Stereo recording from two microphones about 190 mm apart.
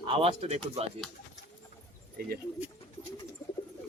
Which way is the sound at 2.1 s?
55° right (ahead or behind).